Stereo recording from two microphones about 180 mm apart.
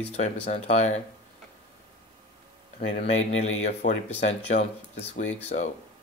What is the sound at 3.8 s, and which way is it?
Speech, 40° left (ahead or behind).